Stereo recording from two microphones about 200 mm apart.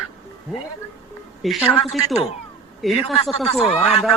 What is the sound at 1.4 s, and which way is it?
Speech, centre (ahead or behind).